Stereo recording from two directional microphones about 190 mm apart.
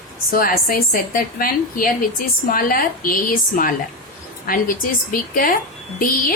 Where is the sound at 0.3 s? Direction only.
50° left (ahead or behind).